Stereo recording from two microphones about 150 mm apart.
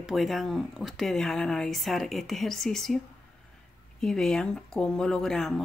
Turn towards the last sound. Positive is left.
turn(degrees=5)  # may be behind; listen again after turning